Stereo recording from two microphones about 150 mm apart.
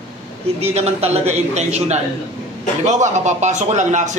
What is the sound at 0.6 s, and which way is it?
A man's voice, 45° right (ahead or behind).